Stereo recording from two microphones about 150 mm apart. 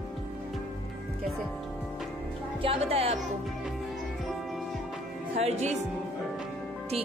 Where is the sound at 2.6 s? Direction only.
40° right (ahead or behind).